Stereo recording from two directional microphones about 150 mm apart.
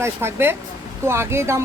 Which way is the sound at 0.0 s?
15° right (ahead or behind).